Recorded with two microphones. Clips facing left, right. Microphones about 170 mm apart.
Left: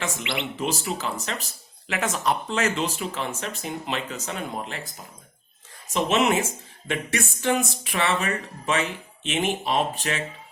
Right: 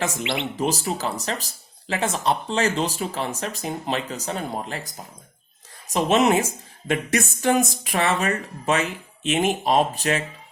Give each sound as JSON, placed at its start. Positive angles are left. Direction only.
{"t": 0.0, "sound": "speech", "side_deg": -40}
{"t": 5.9, "sound": "speech", "side_deg": -35}